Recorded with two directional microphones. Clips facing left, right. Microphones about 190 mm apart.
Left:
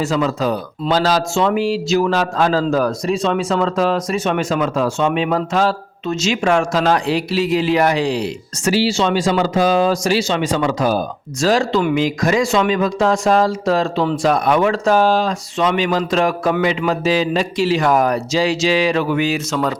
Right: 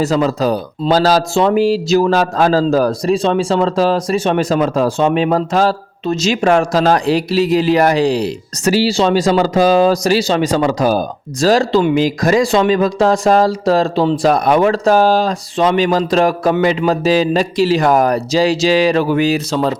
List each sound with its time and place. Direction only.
0.0 s speech: 35° right (ahead or behind)